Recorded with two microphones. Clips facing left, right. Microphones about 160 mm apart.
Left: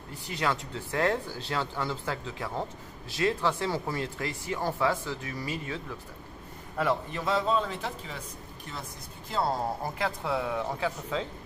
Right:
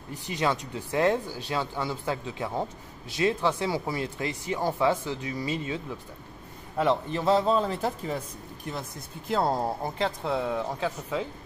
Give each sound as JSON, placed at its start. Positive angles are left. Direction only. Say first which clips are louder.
{"t": 0.1, "sound": "a man's voice", "louder": "right 3 dB", "side_deg": -15}
{"t": 9.9, "sound": "speech", "louder": "right 3 dB", "side_deg": -20}